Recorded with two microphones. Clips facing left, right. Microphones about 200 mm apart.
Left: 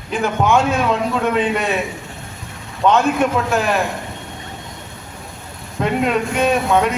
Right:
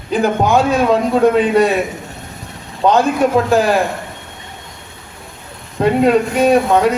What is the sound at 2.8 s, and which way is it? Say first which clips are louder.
Speech: right 2 dB; 35° right (ahead or behind).